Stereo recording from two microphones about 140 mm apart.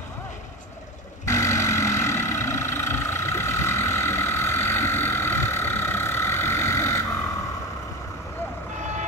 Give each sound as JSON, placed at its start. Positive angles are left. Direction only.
{"t": 1.2, "sound": "vehicle", "side_deg": 20}